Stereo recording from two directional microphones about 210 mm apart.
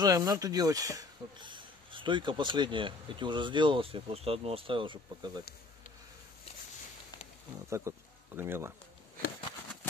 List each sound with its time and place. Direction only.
0.0 s speech: 15° right (ahead or behind)
7.9 s speech: 15° right (ahead or behind)